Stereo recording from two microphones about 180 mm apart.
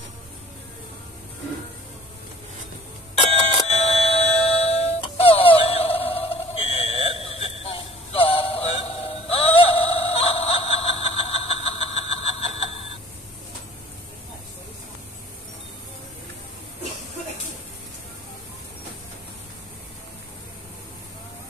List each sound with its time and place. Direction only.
3.6 s music: 35° left (ahead or behind)
5.4 s a sound: 30° left (ahead or behind)
6.1 s fire alarm: 35° left (ahead or behind)